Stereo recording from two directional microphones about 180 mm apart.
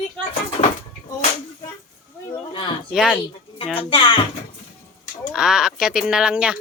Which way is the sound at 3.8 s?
30° left (ahead or behind).